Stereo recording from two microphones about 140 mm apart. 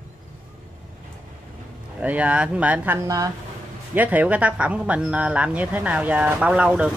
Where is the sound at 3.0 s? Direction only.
25° right (ahead or behind).